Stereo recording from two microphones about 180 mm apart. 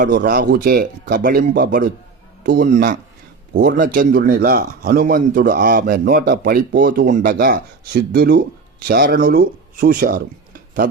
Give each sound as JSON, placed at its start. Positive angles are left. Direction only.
{"t": 0.0, "sound": "speech", "side_deg": -65}